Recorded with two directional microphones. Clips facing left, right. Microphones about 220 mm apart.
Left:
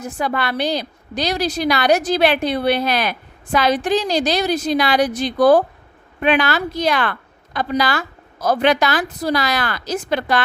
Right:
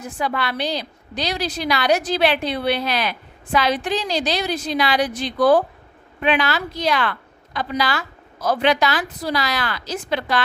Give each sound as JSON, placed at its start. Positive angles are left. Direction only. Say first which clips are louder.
{"t": 0.0, "sound": "a woman's voice", "louder": "left 2 dB", "side_deg": 45}